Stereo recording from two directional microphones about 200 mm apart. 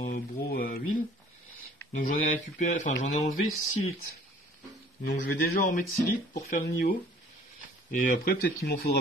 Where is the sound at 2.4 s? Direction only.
40° left (ahead or behind).